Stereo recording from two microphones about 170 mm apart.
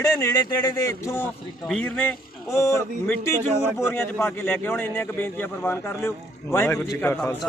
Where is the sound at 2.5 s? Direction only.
15° left (ahead or behind).